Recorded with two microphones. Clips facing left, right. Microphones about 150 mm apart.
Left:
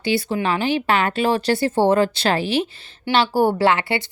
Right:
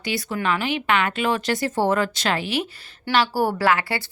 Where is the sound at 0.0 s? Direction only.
30° left (ahead or behind).